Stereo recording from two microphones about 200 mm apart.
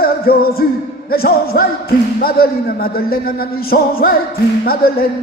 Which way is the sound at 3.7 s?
45° left (ahead or behind).